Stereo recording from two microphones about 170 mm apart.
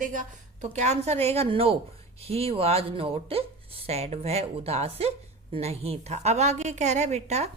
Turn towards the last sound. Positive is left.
turn(degrees=-40)  # may be behind; listen again after turning